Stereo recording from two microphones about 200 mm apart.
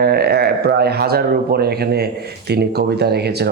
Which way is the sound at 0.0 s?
55° right (ahead or behind).